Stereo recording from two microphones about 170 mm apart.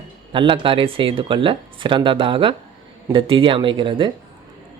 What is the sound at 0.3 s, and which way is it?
Speech, 30° right (ahead or behind).